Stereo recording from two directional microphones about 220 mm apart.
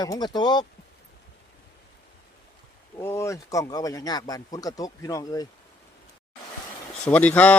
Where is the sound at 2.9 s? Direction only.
10° left (ahead or behind).